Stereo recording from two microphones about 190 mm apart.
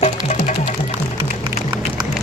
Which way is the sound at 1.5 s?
20° right (ahead or behind).